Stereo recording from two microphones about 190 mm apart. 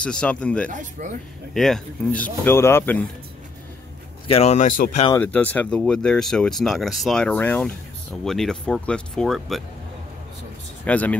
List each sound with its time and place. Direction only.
0.0 s speech: 5° left (ahead or behind)
0.7 s speech: 40° right (ahead or behind)
1.5 s speech: centre (ahead or behind)
4.3 s speech: 35° left (ahead or behind)
5.2 s speech: 10° left (ahead or behind)
10.9 s speech: 10° left (ahead or behind)